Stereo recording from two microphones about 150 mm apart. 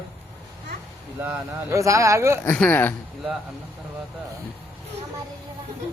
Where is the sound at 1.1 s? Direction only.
10° right (ahead or behind).